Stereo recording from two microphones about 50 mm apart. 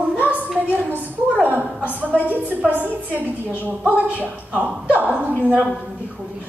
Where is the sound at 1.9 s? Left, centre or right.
Right.